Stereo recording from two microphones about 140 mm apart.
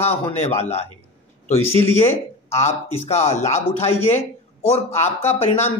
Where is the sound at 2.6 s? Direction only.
50° left (ahead or behind).